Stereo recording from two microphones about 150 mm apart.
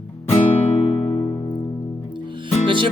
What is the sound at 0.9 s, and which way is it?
Music, 40° left (ahead or behind).